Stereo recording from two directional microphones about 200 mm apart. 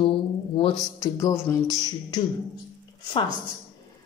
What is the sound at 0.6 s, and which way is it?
Speech, 25° left (ahead or behind).